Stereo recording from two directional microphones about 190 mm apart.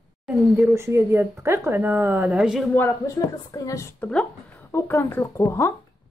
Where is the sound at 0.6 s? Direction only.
15° right (ahead or behind).